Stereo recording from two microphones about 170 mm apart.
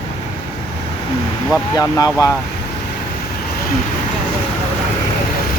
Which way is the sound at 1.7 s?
20° left (ahead or behind).